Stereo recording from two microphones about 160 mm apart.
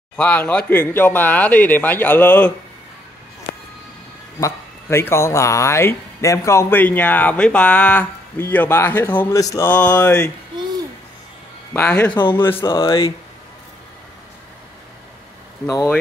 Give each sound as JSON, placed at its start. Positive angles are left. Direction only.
{"t": 0.1, "sound": "speech", "side_deg": 5}
{"t": 4.4, "sound": "speech", "side_deg": 15}
{"t": 10.5, "sound": "a sound", "side_deg": -25}
{"t": 11.7, "sound": "speech", "side_deg": 10}
{"t": 12.1, "sound": "speech", "side_deg": 30}
{"t": 12.4, "sound": "speech", "side_deg": 15}
{"t": 12.6, "sound": "speech", "side_deg": 30}